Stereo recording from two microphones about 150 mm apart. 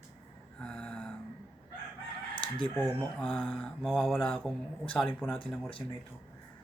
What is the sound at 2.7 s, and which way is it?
Speech, centre (ahead or behind).